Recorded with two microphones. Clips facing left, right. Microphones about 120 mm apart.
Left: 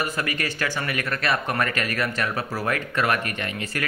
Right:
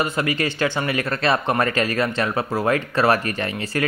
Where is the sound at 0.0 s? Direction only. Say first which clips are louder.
Right 5 dB; 25° right (ahead or behind).